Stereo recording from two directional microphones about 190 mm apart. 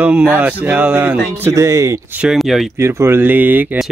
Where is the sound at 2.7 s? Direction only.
15° right (ahead or behind).